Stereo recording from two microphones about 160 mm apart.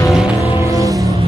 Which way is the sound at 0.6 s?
20° right (ahead or behind).